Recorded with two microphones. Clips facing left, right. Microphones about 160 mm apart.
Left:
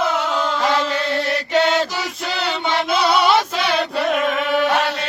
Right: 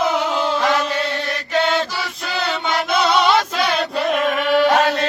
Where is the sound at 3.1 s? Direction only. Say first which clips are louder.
Left 1 dB; 10° left (ahead or behind).